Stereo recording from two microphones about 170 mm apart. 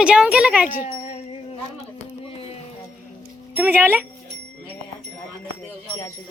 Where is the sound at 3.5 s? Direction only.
10° right (ahead or behind).